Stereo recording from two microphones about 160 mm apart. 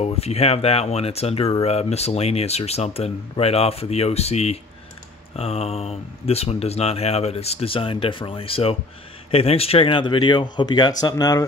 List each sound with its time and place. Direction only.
0.0 s speech: 40° left (ahead or behind); by 11.4 s 25° left (ahead or behind)